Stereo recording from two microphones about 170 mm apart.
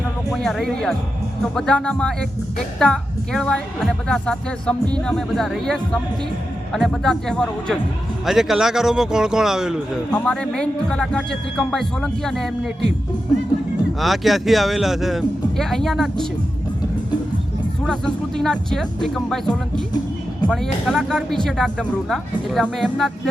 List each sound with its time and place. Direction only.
0.3 s speech: centre (ahead or behind)
14.0 s speech: centre (ahead or behind)
17.8 s speech: 5° left (ahead or behind)
20.8 s speech: centre (ahead or behind)